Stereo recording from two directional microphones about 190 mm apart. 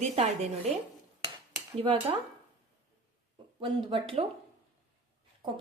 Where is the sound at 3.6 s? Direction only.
25° right (ahead or behind).